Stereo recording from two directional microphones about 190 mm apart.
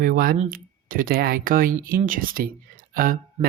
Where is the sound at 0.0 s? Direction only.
50° right (ahead or behind).